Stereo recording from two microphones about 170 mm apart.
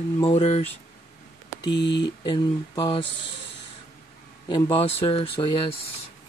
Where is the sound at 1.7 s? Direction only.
90° left.